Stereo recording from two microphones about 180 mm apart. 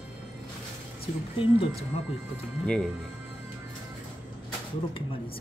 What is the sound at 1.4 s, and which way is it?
Speech, 30° left (ahead or behind).